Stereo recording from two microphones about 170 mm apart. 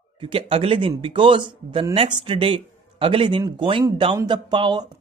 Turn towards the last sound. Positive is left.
turn(degrees=-25)  # may be behind; listen again after turning